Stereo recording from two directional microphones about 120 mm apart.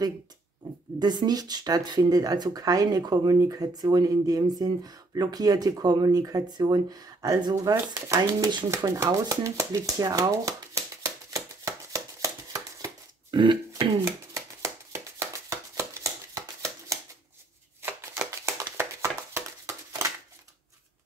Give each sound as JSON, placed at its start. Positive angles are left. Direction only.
{"t": 0.9, "sound": "speech", "side_deg": -35}
{"t": 8.6, "sound": "shuffling cards", "side_deg": -25}
{"t": 13.4, "sound": "speech", "side_deg": -40}
{"t": 14.0, "sound": "shuffling cards", "side_deg": -25}
{"t": 17.8, "sound": "a sound", "side_deg": -20}